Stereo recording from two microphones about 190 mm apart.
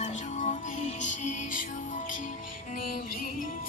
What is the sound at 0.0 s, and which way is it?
Music, 40° left (ahead or behind).